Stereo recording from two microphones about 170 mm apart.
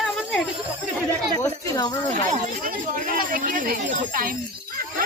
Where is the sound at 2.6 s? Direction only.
55° right (ahead or behind).